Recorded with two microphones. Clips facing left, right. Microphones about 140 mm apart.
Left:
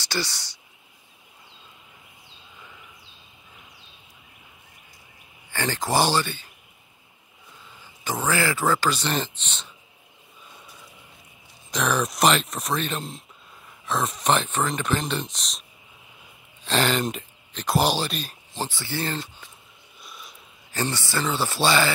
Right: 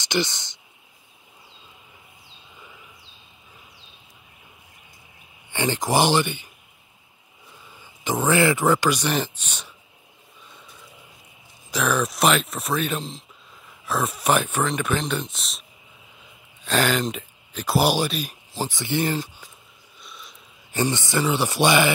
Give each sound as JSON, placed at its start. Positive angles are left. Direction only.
{"t": 0.0, "sound": "speech", "side_deg": -20}
{"t": 5.5, "sound": "speech", "side_deg": -15}
{"t": 8.0, "sound": "speech", "side_deg": -20}
{"t": 11.7, "sound": "speech", "side_deg": 0}
{"t": 16.6, "sound": "speech", "side_deg": 0}
{"t": 20.0, "sound": "a sound", "side_deg": 0}
{"t": 20.7, "sound": "speech", "side_deg": -15}